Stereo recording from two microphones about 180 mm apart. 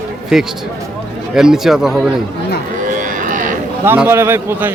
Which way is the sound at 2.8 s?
45° right (ahead or behind).